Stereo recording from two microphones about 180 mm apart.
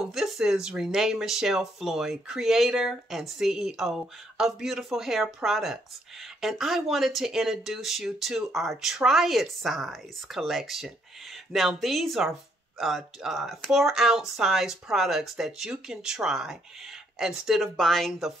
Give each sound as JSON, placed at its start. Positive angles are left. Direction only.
{"t": 0.1, "sound": "speech", "side_deg": 0}